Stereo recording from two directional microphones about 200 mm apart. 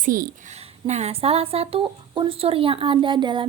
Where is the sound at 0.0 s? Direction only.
45° right (ahead or behind).